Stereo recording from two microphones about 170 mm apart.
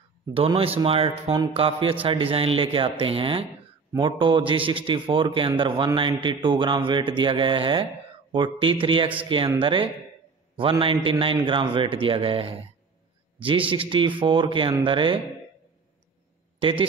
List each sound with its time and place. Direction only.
0.3 s a man's voice: 35° right (ahead or behind)
16.5 s a man's voice: 30° right (ahead or behind)